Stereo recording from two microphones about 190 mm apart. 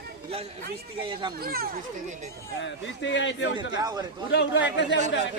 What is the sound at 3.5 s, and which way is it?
Speech, 20° right (ahead or behind).